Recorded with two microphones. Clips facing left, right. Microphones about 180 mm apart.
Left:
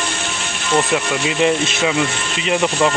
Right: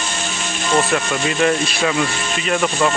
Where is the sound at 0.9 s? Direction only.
15° left (ahead or behind).